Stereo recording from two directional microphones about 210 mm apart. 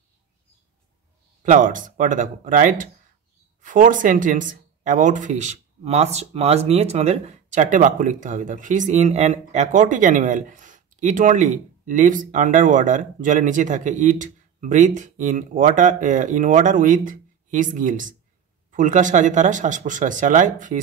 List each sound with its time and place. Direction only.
1.4 s speech: 35° right (ahead or behind)